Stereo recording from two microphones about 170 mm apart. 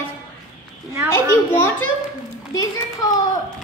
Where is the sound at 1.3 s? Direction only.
15° left (ahead or behind).